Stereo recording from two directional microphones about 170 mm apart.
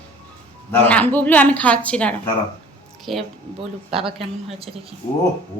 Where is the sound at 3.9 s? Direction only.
35° right (ahead or behind).